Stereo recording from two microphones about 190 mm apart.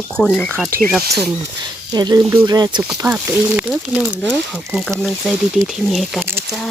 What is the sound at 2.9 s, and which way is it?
Speech, 10° right (ahead or behind).